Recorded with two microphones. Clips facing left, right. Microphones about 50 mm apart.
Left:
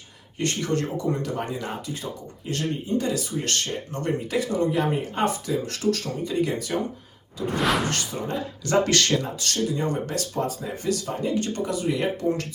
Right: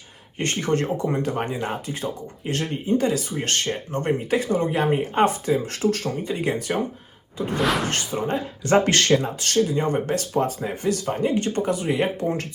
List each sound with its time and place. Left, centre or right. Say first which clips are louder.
0.3 s speech: right 2 dB; right
7.6 s speech: right 1 dB; centre
7.9 s speech: right 3 dB; right